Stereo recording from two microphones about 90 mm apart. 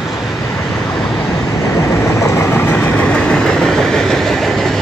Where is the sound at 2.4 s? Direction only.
25° left (ahead or behind).